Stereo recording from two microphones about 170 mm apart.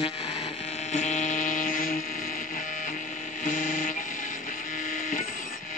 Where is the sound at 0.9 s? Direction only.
45° left (ahead or behind).